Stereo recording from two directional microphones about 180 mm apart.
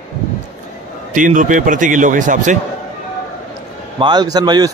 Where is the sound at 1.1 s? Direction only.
45° right (ahead or behind).